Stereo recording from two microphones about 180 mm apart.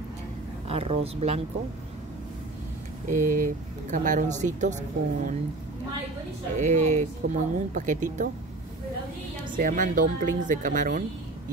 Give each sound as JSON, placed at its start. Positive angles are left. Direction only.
{"t": 0.7, "sound": "speech", "side_deg": -35}
{"t": 3.1, "sound": "speech", "side_deg": -50}
{"t": 6.5, "sound": "speech", "side_deg": -40}
{"t": 9.6, "sound": "speech", "side_deg": -50}